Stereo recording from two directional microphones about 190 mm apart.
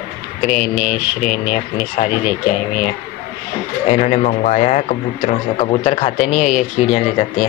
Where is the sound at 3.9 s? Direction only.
40° left (ahead or behind).